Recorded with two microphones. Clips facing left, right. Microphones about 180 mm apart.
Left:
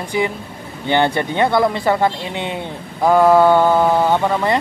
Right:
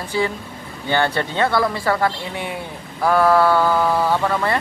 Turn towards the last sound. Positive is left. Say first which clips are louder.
# left 3 dB
turn(degrees=20)  # may be behind; listen again after turning